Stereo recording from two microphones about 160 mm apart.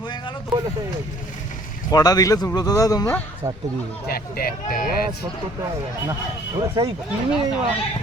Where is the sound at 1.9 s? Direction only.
25° left (ahead or behind).